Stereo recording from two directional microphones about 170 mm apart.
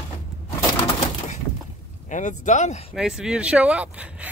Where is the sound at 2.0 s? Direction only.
45° left (ahead or behind).